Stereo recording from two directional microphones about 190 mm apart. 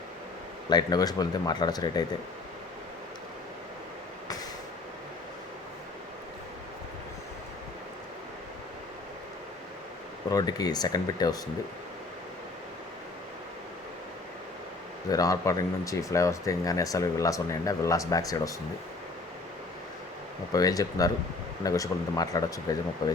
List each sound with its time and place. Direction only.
0.7 s speech: 20° left (ahead or behind)
10.3 s speech: 20° left (ahead or behind)
15.1 s speech: 20° left (ahead or behind)
20.5 s speech: 20° left (ahead or behind)